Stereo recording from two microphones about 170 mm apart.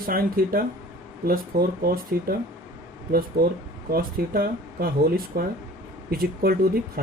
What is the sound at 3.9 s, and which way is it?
Speech, 60° right (ahead or behind).